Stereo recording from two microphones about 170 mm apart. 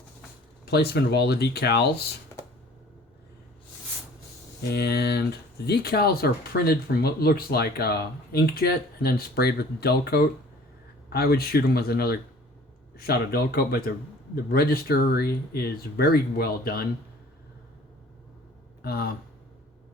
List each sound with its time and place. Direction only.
0.6 s speech: 70° left (ahead or behind)
4.7 s speech: 70° left (ahead or behind)
18.8 s speech: 65° left (ahead or behind)